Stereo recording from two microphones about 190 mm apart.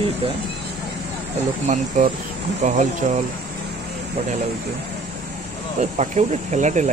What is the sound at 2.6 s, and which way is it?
Speech, 40° right (ahead or behind).